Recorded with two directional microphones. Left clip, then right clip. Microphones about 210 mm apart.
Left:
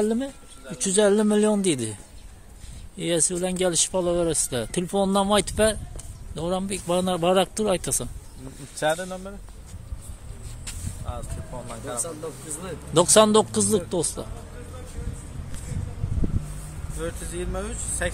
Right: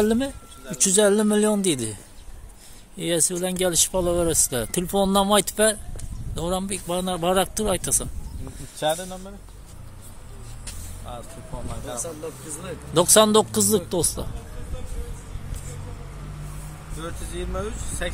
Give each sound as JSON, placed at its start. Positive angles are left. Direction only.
{"t": 0.0, "sound": "speech", "side_deg": -15}
{"t": 0.9, "sound": "speech", "side_deg": 0}
{"t": 3.0, "sound": "speech", "side_deg": 0}
{"t": 6.7, "sound": "speech", "side_deg": 15}
{"t": 10.6, "sound": "a sound", "side_deg": 10}
{"t": 12.0, "sound": "speech", "side_deg": 55}
{"t": 12.9, "sound": "speech", "side_deg": 5}
{"t": 17.0, "sound": "speech", "side_deg": 45}